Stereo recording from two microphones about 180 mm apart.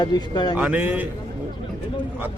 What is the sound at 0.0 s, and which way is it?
Speech, 25° left (ahead or behind).